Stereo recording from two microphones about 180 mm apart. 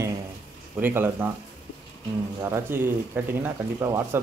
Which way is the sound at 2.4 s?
15° right (ahead or behind).